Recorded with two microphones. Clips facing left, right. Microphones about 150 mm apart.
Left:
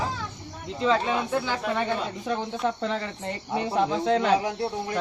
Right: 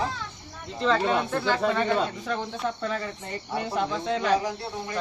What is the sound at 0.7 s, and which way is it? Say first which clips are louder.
Speech: even; 5° left (ahead or behind).